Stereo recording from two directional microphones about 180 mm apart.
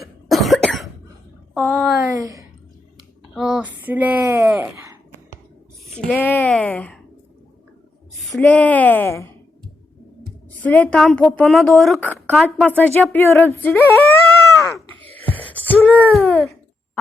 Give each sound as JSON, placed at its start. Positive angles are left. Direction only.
{"t": 0.0, "sound": "cough", "side_deg": 0}
{"t": 1.5, "sound": "speech", "side_deg": -10}
{"t": 2.1, "sound": "a woman's voice", "side_deg": -20}
{"t": 3.3, "sound": "speech", "side_deg": 0}
{"t": 5.9, "sound": "a woman's voice", "side_deg": 5}
{"t": 8.2, "sound": "a woman's voice", "side_deg": 5}
{"t": 10.6, "sound": "a woman's voice", "side_deg": 10}
{"t": 14.8, "sound": "music", "side_deg": 10}
{"t": 15.4, "sound": "wail", "side_deg": 10}